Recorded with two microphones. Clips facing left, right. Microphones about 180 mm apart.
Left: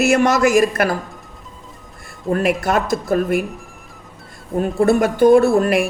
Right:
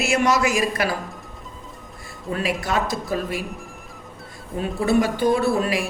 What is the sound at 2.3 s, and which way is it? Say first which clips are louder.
A man's voice: left 7 dB; 50° left (ahead or behind).